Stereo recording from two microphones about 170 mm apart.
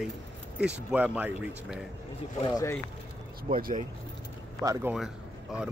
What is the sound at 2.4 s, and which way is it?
Speech, 20° left (ahead or behind).